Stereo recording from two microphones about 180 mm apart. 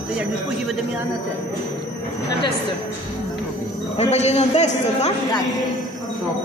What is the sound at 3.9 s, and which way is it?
A man's voice, 40° left (ahead or behind).